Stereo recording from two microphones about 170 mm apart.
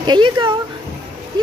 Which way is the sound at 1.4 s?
25° right (ahead or behind).